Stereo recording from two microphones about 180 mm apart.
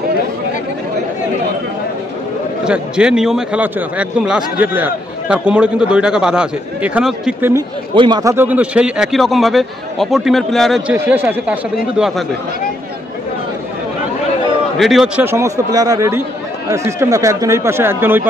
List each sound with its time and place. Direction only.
2.6 s speech: 5° right (ahead or behind)
7.5 s speech: 25° right (ahead or behind); by 11.5 s 10° right (ahead or behind)
14.8 s speech: centre (ahead or behind)
15.2 s speech: 15° right (ahead or behind)